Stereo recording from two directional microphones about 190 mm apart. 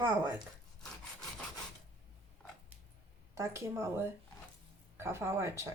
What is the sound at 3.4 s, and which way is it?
Speech, 15° right (ahead or behind).